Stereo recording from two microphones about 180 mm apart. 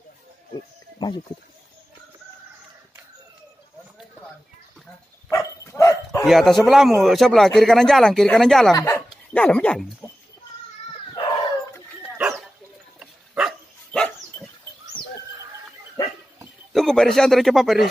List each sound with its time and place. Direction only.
0.9 s a sound: 25° left (ahead or behind)
5.3 s dog: 15° left (ahead or behind)
6.2 s speech: centre (ahead or behind)
8.7 s a sound: 15° left (ahead or behind)
9.4 s speech: 5° left (ahead or behind)
12.0 s dog: 5° right (ahead or behind)
16.0 s dog: 20° left (ahead or behind)
16.7 s speech: centre (ahead or behind)